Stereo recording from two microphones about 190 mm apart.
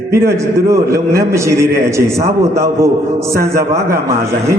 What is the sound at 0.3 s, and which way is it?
A man's voice, 15° right (ahead or behind).